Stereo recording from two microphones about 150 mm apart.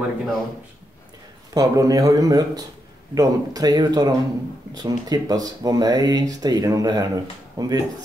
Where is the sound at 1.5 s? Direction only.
25° right (ahead or behind).